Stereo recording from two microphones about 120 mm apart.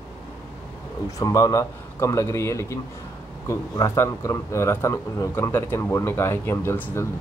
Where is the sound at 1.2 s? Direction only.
30° left (ahead or behind).